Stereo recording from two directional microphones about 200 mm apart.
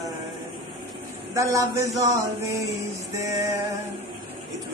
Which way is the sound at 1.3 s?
15° right (ahead or behind).